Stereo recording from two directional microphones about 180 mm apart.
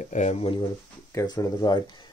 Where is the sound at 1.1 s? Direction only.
20° left (ahead or behind).